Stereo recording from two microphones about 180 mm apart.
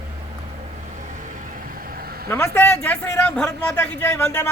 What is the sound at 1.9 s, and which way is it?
Vehicle, 60° right (ahead or behind).